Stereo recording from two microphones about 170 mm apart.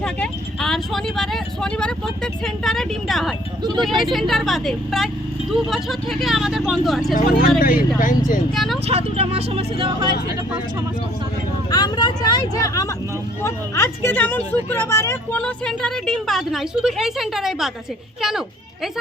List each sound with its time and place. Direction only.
0.0 s speech: 5° left (ahead or behind)
7.1 s speech: 55° left (ahead or behind)
8.5 s speech: centre (ahead or behind)
8.9 s speech: 40° right (ahead or behind)
11.7 s speech: 25° left (ahead or behind); by 18.9 s centre (ahead or behind)